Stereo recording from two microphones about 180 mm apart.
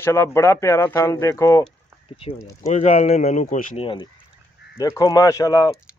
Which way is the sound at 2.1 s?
30° left (ahead or behind).